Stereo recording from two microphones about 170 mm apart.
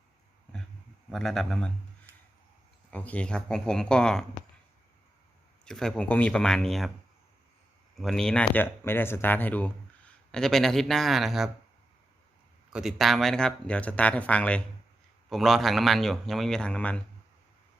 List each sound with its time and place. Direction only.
1.1 s a man's voice: centre (ahead or behind)
2.1 s a sound: 15° right (ahead or behind)
2.9 s a man's voice: 10° left (ahead or behind)
5.6 s a man's voice: 5° left (ahead or behind)
7.9 s a man's voice: centre (ahead or behind)
12.7 s a man's voice: centre (ahead or behind)